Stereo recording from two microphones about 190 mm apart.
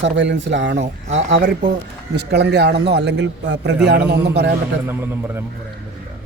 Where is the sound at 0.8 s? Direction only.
35° right (ahead or behind).